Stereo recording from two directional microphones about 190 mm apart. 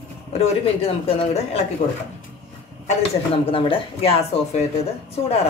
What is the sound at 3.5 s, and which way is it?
Speech, 30° left (ahead or behind).